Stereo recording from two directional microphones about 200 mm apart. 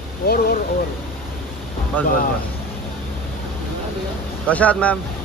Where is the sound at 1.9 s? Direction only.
10° left (ahead or behind).